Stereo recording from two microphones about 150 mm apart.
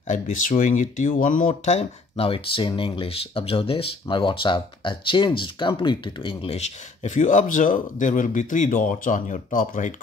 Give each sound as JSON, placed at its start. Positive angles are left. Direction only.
{"t": 0.1, "sound": "speech", "side_deg": 60}